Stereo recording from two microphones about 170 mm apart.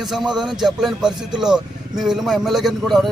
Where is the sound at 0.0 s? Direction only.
Centre (ahead or behind).